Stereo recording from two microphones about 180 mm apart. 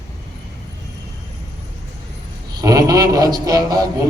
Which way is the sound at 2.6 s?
20° right (ahead or behind).